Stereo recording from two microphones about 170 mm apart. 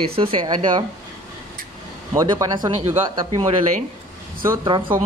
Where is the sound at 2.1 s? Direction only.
20° right (ahead or behind).